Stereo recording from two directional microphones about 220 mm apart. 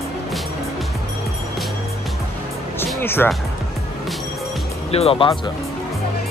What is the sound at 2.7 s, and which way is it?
Music, 10° left (ahead or behind).